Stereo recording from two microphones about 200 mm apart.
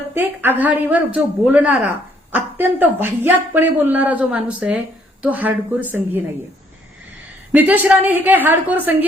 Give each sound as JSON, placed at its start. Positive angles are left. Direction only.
{"t": 0.1, "sound": "speech", "side_deg": -10}
{"t": 7.5, "sound": "speech", "side_deg": -10}